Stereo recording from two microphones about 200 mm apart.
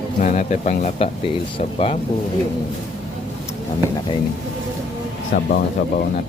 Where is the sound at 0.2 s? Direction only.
40° left (ahead or behind).